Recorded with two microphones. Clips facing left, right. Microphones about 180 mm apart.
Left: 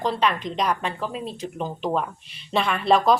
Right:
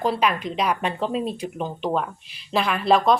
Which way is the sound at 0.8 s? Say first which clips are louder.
Right 4 dB; 20° right (ahead or behind).